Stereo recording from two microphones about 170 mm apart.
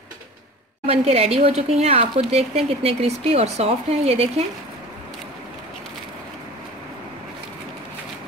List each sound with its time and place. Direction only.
0.8 s speech: 35° right (ahead or behind)